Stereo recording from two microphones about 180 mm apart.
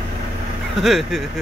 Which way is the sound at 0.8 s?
Centre (ahead or behind).